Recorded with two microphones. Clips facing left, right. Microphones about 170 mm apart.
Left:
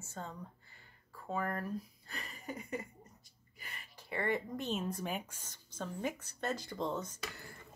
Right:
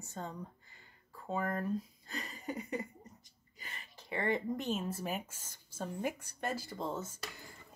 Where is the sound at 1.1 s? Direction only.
20° right (ahead or behind).